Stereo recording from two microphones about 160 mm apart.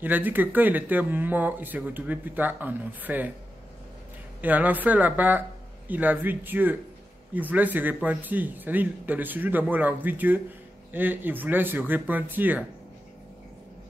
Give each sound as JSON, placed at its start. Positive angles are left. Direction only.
{"t": 0.0, "sound": "speech", "side_deg": -10}
{"t": 4.4, "sound": "speech", "side_deg": -10}